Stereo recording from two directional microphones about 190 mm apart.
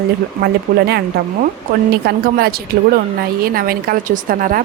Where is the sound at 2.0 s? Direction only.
55° right (ahead or behind).